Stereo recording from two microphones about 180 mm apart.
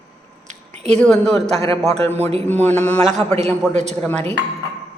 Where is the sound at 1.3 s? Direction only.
35° right (ahead or behind).